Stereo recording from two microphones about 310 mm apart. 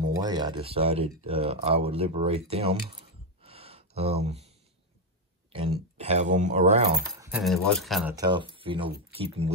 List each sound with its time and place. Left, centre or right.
0.0 s speech: centre
3.4 s a sound: centre
5.5 s speech: centre
7.0 s speech: centre